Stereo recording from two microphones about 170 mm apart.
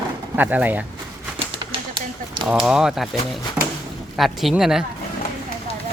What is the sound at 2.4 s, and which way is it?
Speech, 5° right (ahead or behind).